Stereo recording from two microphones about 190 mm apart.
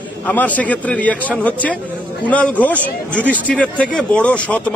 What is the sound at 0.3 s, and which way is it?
A man's voice, 10° left (ahead or behind).